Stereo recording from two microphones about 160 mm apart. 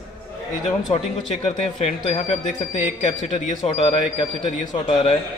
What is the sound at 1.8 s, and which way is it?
A man's voice, 45° left (ahead or behind).